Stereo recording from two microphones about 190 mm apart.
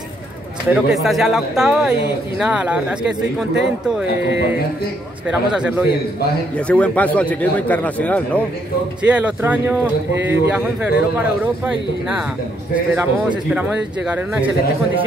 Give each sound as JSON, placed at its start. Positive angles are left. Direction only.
{"t": 0.7, "sound": "speech", "side_deg": -5}
{"t": 4.2, "sound": "speech", "side_deg": -70}
{"t": 5.5, "sound": "speech", "side_deg": -5}
{"t": 6.5, "sound": "a man's voice", "side_deg": 5}
{"t": 9.0, "sound": "a man's voice", "side_deg": -5}